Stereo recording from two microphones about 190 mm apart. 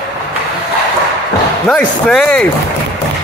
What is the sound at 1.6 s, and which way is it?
Speech, 5° left (ahead or behind).